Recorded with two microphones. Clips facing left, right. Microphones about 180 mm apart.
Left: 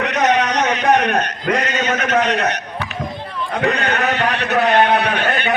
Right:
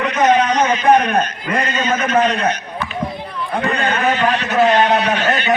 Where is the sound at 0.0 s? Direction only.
70° left (ahead or behind).